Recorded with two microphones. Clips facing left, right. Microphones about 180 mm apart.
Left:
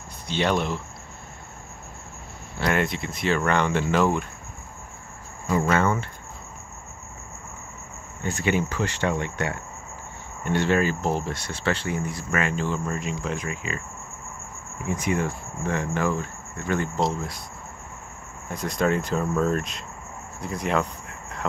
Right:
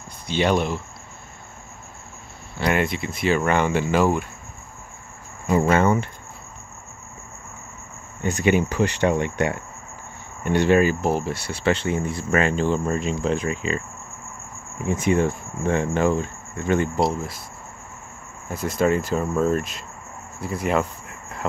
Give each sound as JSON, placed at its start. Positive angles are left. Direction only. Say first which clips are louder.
{"t": 0.3, "sound": "speech", "louder": "right 3 dB", "side_deg": -5}
{"t": 2.6, "sound": "speech", "louder": "right 2 dB", "side_deg": 0}
{"t": 5.8, "sound": "speech", "louder": "right 4 dB", "side_deg": -15}
{"t": 8.2, "sound": "speech", "louder": "right 5 dB", "side_deg": -15}
{"t": 15.0, "sound": "speech", "louder": "right 6 dB", "side_deg": -25}
{"t": 18.5, "sound": "speech", "louder": "right 3 dB", "side_deg": -5}
{"t": 20.3, "sound": "cricket", "louder": "right 3 dB", "side_deg": -5}